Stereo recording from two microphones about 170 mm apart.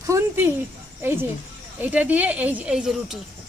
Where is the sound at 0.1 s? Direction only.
15° right (ahead or behind).